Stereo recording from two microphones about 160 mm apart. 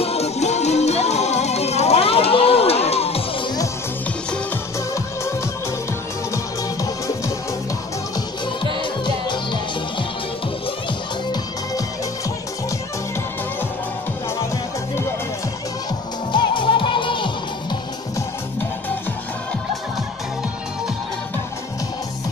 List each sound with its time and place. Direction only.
0.0 s music: 40° left (ahead or behind)
9.0 s music: 30° left (ahead or behind)
16.3 s music: 30° left (ahead or behind)